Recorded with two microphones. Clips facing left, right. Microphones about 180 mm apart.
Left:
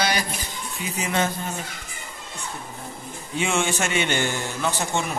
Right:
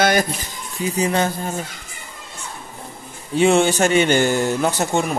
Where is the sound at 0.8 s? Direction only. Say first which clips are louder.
Right 6 dB; 35° right (ahead or behind).